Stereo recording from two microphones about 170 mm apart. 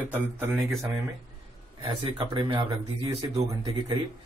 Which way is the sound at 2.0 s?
35° right (ahead or behind).